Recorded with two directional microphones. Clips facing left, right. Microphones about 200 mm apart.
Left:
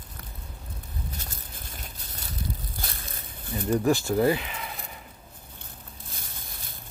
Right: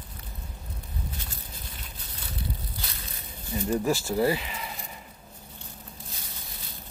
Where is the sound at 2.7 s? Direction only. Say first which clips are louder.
Left 2 dB; 50° left (ahead or behind).